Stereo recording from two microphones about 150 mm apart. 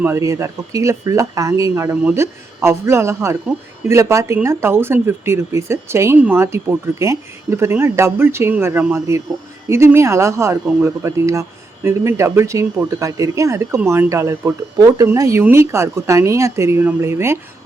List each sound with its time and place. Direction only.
0.0 s speech: 20° right (ahead or behind)